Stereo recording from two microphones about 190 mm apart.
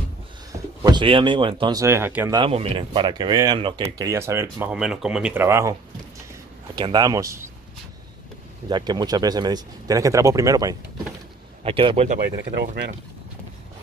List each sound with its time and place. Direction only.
0.8 s speech: 25° right (ahead or behind)
2.3 s speech: 30° right (ahead or behind)
4.0 s speech: 15° right (ahead or behind)
8.6 s speech: 20° right (ahead or behind)
11.6 s speech: 30° right (ahead or behind)